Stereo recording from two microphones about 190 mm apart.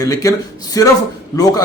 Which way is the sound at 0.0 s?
20° left (ahead or behind).